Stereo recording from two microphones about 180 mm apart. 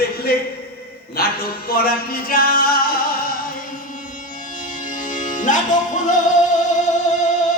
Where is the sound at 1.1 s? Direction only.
60° left (ahead or behind).